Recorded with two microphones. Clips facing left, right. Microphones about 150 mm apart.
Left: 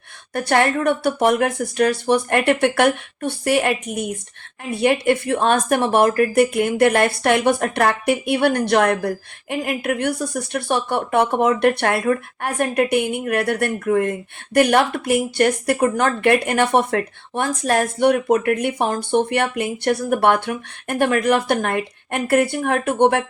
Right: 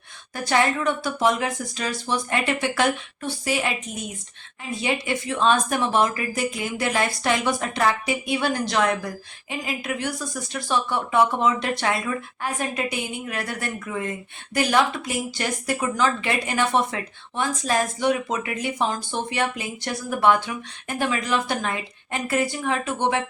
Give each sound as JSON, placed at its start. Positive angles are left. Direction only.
{"t": 0.3, "sound": "speech", "side_deg": 60}